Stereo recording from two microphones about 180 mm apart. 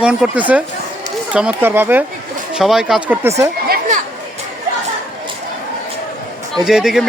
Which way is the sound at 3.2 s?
15° right (ahead or behind).